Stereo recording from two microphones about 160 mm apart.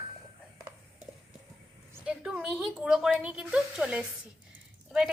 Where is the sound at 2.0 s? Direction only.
5° right (ahead or behind).